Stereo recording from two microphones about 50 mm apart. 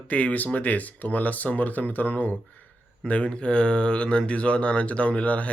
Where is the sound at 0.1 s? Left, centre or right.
Left.